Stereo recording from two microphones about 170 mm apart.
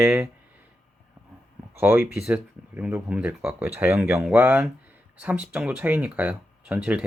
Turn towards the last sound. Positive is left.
turn(degrees=-5)  # may be behind; listen again after turning